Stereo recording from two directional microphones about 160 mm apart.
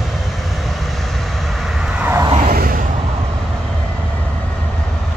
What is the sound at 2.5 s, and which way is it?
Vehicle, 60° right (ahead or behind).